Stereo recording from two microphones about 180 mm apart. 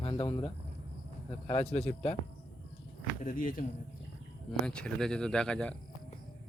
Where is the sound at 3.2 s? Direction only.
50° left (ahead or behind).